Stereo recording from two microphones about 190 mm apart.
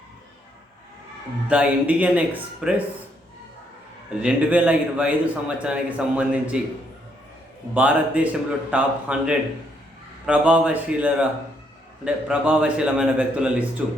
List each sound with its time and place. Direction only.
1.5 s a man's voice: 5° right (ahead or behind)
4.2 s a man's voice: 5° right (ahead or behind)
7.7 s a man's voice: 5° right (ahead or behind)